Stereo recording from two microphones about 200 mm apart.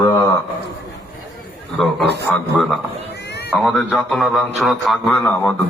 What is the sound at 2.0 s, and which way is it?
Speech, 55° right (ahead or behind).